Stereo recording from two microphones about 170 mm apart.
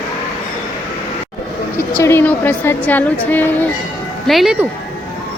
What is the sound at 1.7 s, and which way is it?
A woman's voice, 15° left (ahead or behind).